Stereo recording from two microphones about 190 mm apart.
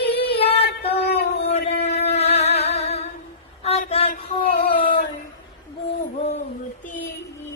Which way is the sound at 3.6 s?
35° left (ahead or behind).